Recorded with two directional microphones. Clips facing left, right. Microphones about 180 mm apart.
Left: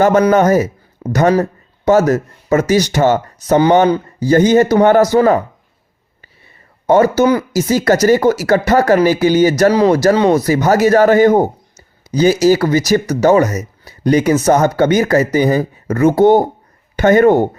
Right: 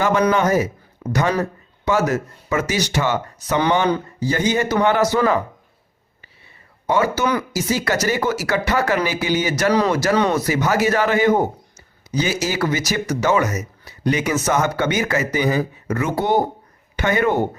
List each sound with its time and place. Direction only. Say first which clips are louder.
0.0 s a man's voice: left 7 dB; 45° left (ahead or behind)
6.8 s a man's voice: left 9 dB; 45° left (ahead or behind)